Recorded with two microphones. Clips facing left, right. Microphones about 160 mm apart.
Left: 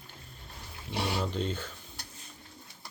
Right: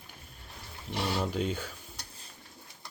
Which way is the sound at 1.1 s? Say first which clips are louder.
Right 1 dB; 10° right (ahead or behind).